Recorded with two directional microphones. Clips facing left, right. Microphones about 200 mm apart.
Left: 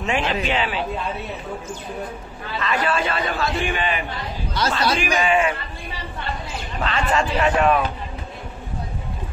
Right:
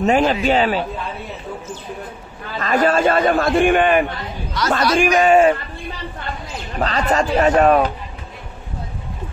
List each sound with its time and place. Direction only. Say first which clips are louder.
0.0 s a man's voice: right 7 dB; 40° right (ahead or behind)
2.6 s a man's voice: right 7 dB; 45° right (ahead or behind)
6.8 s a man's voice: right 3 dB; 40° right (ahead or behind)